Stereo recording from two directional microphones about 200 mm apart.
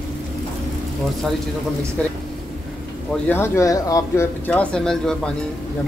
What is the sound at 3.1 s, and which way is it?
Speech, 10° left (ahead or behind).